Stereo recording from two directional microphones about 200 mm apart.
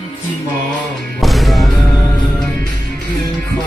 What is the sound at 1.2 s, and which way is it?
Music, centre (ahead or behind).